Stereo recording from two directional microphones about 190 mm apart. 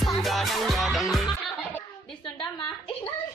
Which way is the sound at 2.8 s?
30° left (ahead or behind).